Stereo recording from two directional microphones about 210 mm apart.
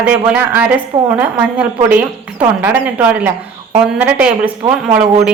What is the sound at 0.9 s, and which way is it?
Speech, 20° right (ahead or behind).